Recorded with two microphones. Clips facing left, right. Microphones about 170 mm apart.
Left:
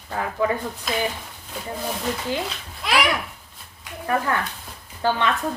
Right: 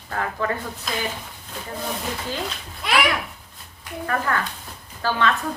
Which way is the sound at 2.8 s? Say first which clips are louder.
Even; centre (ahead or behind).